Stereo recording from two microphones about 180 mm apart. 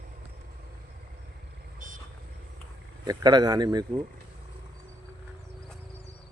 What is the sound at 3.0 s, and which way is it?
Speech, 20° right (ahead or behind).